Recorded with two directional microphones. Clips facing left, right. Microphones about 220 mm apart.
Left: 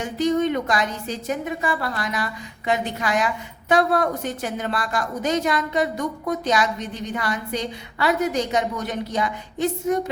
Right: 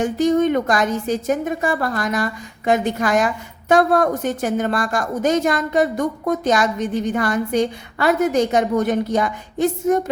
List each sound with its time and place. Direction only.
0.0 s a woman's voice: 50° right (ahead or behind)